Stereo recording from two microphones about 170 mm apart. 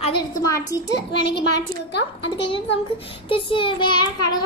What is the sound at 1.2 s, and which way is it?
A woman's voice, 85° left.